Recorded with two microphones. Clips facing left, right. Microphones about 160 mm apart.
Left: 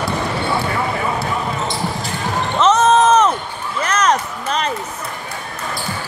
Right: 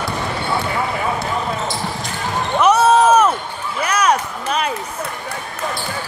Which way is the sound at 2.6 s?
10° right (ahead or behind).